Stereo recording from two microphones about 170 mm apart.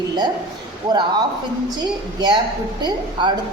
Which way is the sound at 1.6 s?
25° right (ahead or behind).